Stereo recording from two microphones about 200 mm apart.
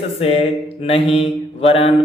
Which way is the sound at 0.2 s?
30° left (ahead or behind).